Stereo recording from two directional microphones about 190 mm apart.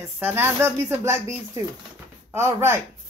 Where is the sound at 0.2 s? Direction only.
10° right (ahead or behind).